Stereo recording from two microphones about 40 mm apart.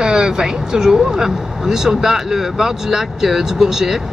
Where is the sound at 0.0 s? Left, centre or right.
Centre.